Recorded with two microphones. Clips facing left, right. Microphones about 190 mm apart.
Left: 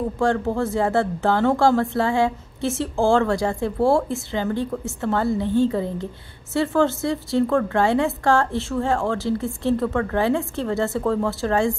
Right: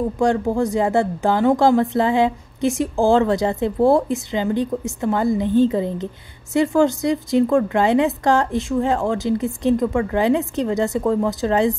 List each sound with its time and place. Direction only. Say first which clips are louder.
0.2 s speech: right 3 dB; 15° right (ahead or behind)